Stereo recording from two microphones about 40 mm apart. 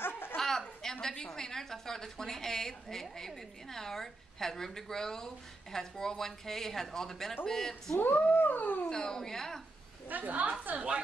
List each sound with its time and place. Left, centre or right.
0.1 s a sound: left
0.4 s a sound: centre
1.2 s a woman's voice: centre
8.0 s dog: left
8.8 s a woman's voice: centre
10.0 s a woman's voice: right